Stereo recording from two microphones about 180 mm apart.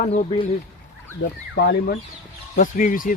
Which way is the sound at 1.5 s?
65° left (ahead or behind).